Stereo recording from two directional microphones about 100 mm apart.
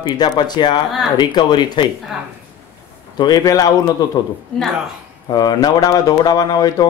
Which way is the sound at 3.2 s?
40° left (ahead or behind).